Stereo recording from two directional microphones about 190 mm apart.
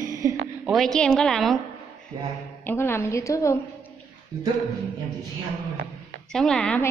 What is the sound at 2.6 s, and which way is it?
A woman's voice, 10° left (ahead or behind).